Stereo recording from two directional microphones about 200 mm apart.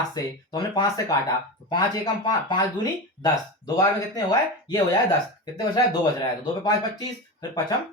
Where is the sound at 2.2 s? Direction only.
25° left (ahead or behind).